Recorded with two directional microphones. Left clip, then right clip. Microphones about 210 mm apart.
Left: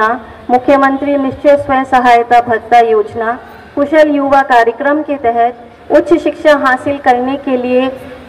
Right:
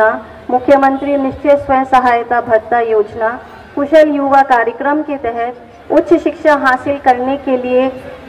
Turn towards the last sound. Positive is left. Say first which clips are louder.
# left 1 dB
turn(degrees=50)  # may be behind; listen again after turning